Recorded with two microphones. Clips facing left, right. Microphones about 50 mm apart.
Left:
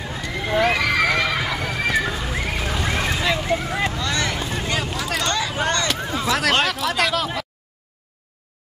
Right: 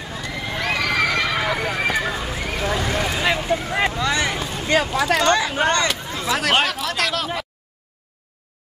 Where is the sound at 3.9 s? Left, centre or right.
Centre.